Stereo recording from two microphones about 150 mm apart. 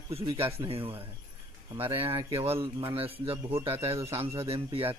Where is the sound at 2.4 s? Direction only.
40° right (ahead or behind).